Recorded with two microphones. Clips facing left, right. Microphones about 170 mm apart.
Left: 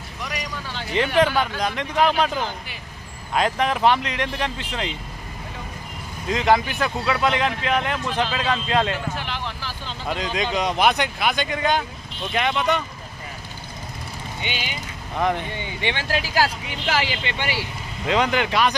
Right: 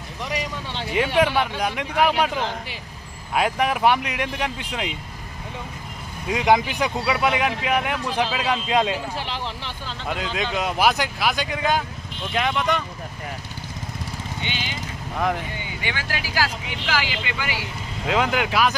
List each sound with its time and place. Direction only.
0.2 s vehicle: 25° right (ahead or behind)
0.9 s speech: 5° right (ahead or behind)
6.2 s speech: 10° right (ahead or behind)
9.1 s vehicle: 30° right (ahead or behind)
9.8 s a sound: 5° right (ahead or behind)
10.5 s speech: 5° right (ahead or behind)
14.4 s speech: 15° left (ahead or behind)
15.1 s speech: centre (ahead or behind)
15.8 s speech: 25° left (ahead or behind)
18.0 s speech: 5° right (ahead or behind)